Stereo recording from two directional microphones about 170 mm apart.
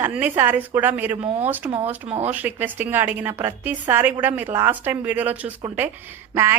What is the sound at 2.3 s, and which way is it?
A woman's voice, 10° right (ahead or behind).